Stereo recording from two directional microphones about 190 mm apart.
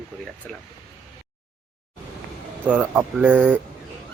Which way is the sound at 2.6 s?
10° right (ahead or behind).